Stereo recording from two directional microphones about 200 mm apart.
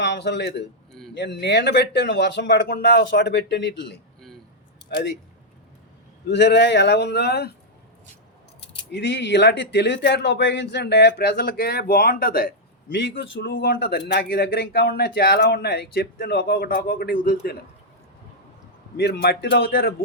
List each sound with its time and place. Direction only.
0.0 s a man's voice: 60° left (ahead or behind)
6.2 s speech: 60° left (ahead or behind)
8.9 s speech: 60° left (ahead or behind)
18.9 s speech: 55° left (ahead or behind)